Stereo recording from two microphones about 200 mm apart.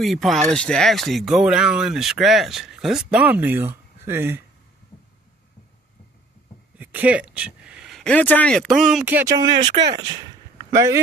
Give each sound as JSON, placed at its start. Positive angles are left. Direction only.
{"t": 0.0, "sound": "speech", "side_deg": 0}
{"t": 6.8, "sound": "speech", "side_deg": -10}
{"t": 9.4, "sound": "speech", "side_deg": -20}